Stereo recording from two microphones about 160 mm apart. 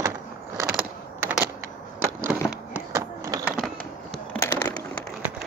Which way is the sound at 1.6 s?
15° right (ahead or behind).